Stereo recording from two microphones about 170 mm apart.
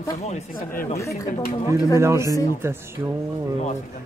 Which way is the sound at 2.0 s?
15° right (ahead or behind).